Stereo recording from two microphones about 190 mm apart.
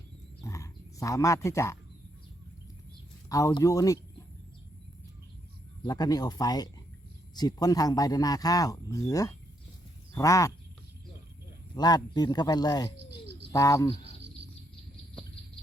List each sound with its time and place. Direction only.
0.4 s frog: 15° left (ahead or behind)
3.2 s speech: 20° left (ahead or behind)
5.8 s speech: 20° left (ahead or behind)
11.7 s speech: 20° left (ahead or behind)